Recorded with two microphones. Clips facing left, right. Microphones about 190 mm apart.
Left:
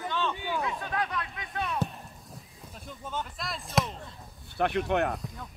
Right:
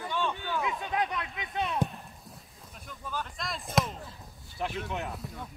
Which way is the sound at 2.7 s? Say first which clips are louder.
Left 1 dB; 25° left (ahead or behind).